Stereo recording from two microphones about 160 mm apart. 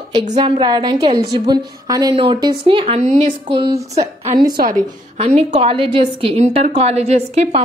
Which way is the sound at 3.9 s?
45° right (ahead or behind).